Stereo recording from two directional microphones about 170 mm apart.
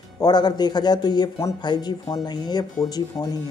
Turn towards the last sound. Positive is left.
turn(degrees=20)  # may be behind; listen again after turning